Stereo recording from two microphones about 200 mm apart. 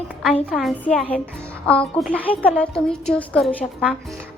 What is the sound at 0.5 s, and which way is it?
A woman's voice, centre (ahead or behind).